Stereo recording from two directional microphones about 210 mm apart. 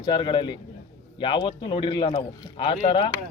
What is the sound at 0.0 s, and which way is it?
Speech, 20° left (ahead or behind).